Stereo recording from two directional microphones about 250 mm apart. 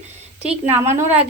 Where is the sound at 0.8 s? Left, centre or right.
Centre.